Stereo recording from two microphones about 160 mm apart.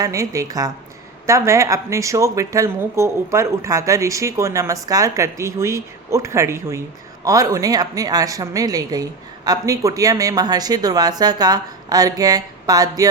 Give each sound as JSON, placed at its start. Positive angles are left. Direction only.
{"t": 0.0, "sound": "speech", "side_deg": -20}